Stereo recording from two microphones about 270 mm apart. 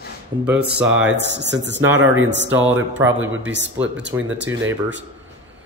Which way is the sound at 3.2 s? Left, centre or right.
Right.